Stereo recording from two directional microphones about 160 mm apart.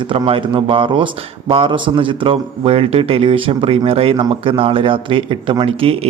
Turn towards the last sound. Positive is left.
turn(degrees=-35)  # may be behind; listen again after turning